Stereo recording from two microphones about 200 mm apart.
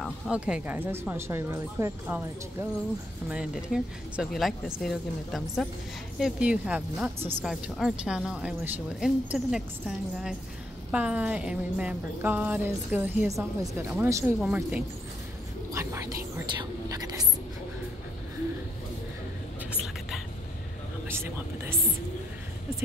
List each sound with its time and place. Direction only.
0.0 s speech: 5° right (ahead or behind)
3.3 s speech: 5° right (ahead or behind)
15.7 s whispering: 15° right (ahead or behind)
21.1 s a sound: 10° right (ahead or behind)